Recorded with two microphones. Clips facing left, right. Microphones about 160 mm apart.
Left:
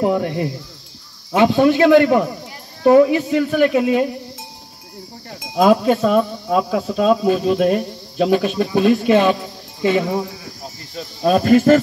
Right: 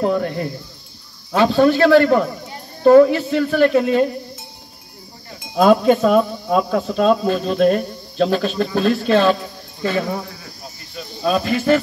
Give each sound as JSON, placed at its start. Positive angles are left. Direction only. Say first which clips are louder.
{"t": 0.0, "sound": "a man's voice", "louder": "left 1 dB", "side_deg": 15}
{"t": 5.6, "sound": "a man's voice", "louder": "right 1 dB", "side_deg": 5}
{"t": 11.2, "sound": "speech", "louder": "left 5 dB", "side_deg": 45}